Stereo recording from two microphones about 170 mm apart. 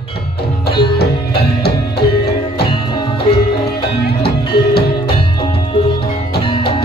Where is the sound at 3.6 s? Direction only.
70° left (ahead or behind).